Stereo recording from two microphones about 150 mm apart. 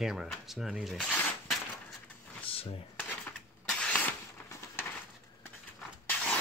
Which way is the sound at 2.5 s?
35° left (ahead or behind).